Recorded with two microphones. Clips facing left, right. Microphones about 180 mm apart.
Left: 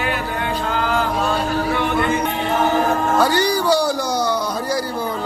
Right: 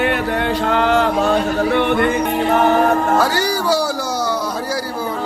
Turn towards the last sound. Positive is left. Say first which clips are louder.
# left 1 dB
turn(degrees=-5)  # may be behind; listen again after turning